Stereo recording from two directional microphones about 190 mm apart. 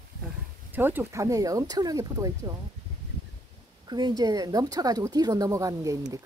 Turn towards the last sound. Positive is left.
turn(degrees=-15)  # may be behind; listen again after turning